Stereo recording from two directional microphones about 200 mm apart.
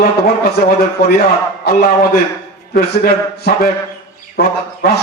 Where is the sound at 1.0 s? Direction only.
50° left (ahead or behind).